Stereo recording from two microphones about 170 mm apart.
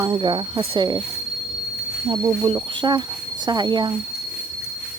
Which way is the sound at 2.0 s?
20° right (ahead or behind).